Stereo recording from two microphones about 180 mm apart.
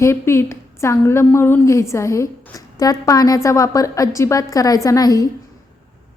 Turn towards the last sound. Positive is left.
turn(degrees=20)  # may be behind; listen again after turning